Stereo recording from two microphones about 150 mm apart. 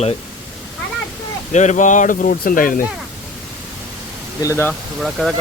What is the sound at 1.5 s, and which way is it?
Speech, 50° left (ahead or behind).